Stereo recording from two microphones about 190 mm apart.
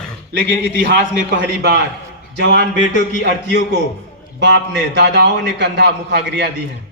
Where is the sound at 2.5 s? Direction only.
45° left (ahead or behind).